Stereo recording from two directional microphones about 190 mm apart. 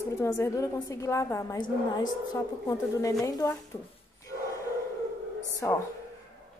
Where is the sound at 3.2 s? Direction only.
20° left (ahead or behind).